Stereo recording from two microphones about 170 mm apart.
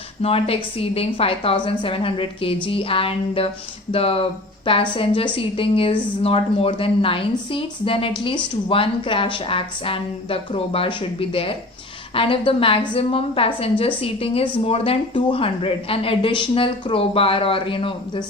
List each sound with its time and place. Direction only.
0.2 s a woman's voice: 35° left (ahead or behind)